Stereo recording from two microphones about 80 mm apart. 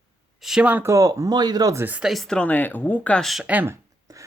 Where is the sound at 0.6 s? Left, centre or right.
Right.